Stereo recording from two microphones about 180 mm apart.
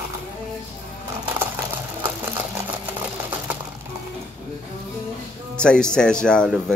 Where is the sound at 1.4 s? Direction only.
10° right (ahead or behind).